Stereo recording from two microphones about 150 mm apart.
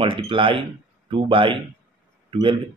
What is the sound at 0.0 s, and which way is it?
Speech, 35° right (ahead or behind).